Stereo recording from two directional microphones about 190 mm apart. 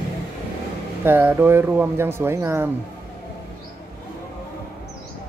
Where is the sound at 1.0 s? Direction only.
10° right (ahead or behind).